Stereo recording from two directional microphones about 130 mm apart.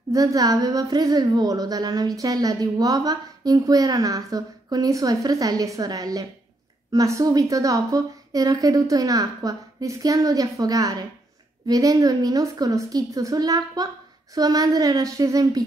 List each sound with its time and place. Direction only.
0.1 s a woman's voice: 25° right (ahead or behind)